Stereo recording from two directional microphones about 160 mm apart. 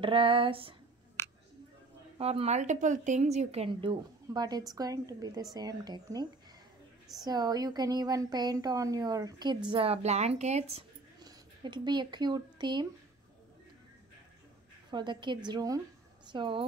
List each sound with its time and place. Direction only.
0.0 s a sound: 35° right (ahead or behind)
1.2 s a sound: 15° left (ahead or behind)
2.1 s a woman's voice: 40° right (ahead or behind); by 6.2 s 25° right (ahead or behind)
7.2 s a woman's voice: 25° right (ahead or behind)
9.7 s speech: 35° right (ahead or behind)
11.2 s speech: 30° right (ahead or behind)
14.9 s a woman's voice: 30° right (ahead or behind)